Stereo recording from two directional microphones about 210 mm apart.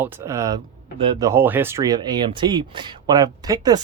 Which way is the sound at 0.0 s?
15° right (ahead or behind).